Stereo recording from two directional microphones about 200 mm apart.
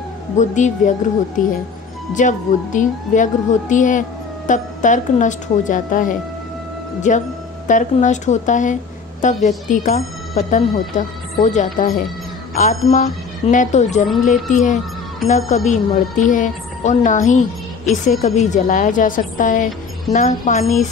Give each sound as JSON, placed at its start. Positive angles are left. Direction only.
{"t": 0.4, "sound": "a woman's voice", "side_deg": 35}